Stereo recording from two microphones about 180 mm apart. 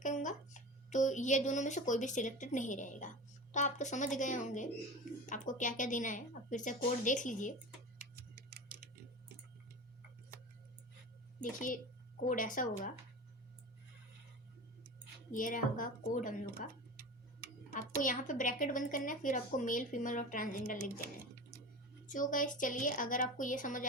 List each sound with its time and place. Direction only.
0.0 s a woman's voice: 45° left (ahead or behind)
11.3 s a woman's voice: 50° left (ahead or behind)
15.3 s a woman's voice: 50° left (ahead or behind)
22.0 s a woman's voice: 45° left (ahead or behind)